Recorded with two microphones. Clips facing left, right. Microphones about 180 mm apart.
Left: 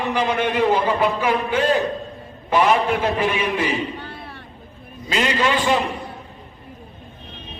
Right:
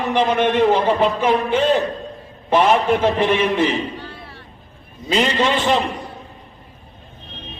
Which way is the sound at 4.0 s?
60° left (ahead or behind).